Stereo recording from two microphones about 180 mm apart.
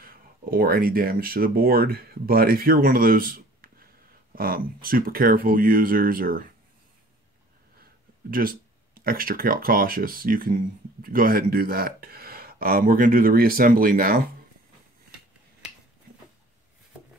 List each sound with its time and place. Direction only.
0.0 s speech: 55° right (ahead or behind)
8.3 s speech: 55° right (ahead or behind)